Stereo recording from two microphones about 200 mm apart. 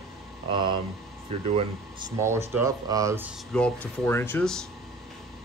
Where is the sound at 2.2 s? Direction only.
15° right (ahead or behind).